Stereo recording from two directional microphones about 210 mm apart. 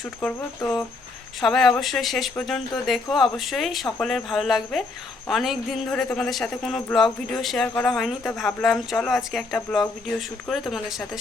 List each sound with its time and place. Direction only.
0.2 s speech: 5° left (ahead or behind)